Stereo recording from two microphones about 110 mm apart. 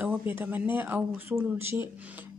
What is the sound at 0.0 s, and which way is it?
Speech, 15° right (ahead or behind).